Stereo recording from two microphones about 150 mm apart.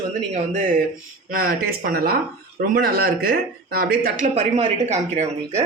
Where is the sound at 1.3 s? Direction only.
70° right (ahead or behind); by 2.1 s 90° right.